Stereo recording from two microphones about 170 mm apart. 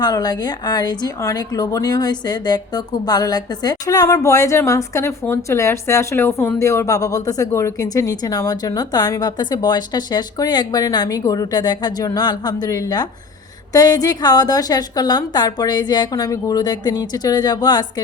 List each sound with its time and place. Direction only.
0.0 s speech: 25° left (ahead or behind)